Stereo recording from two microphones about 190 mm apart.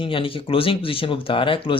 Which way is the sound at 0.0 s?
30° left (ahead or behind).